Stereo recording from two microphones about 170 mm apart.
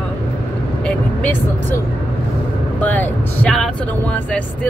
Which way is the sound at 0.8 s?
10° left (ahead or behind).